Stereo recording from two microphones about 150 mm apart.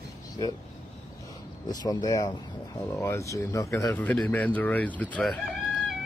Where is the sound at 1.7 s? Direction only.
25° left (ahead or behind); by 5.3 s 10° left (ahead or behind).